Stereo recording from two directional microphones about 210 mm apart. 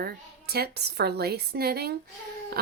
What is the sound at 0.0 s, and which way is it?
Speech, 45° right (ahead or behind).